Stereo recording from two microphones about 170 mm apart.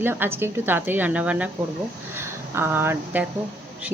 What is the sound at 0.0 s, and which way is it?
Speech, 15° right (ahead or behind).